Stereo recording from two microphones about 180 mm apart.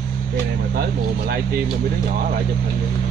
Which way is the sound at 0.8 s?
60° right (ahead or behind).